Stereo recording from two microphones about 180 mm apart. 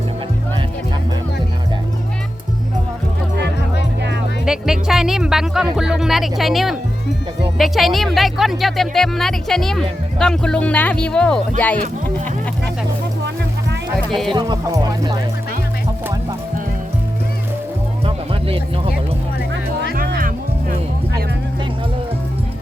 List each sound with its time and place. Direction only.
4.4 s speech: 5° right (ahead or behind)
14.1 s speech: centre (ahead or behind)
14.3 s speech: 20° right (ahead or behind)
18.0 s music: 30° right (ahead or behind)
19.9 s music: 60° right (ahead or behind)